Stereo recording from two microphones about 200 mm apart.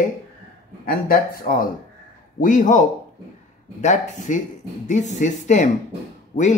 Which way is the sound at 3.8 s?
35° left (ahead or behind).